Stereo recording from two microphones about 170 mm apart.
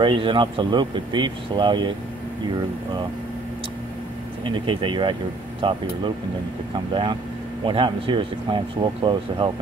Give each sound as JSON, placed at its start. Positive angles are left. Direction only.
{"t": 0.0, "sound": "speech", "side_deg": -30}
{"t": 4.6, "sound": "speech", "side_deg": -30}